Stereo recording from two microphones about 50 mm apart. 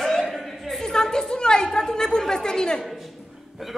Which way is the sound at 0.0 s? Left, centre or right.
Centre.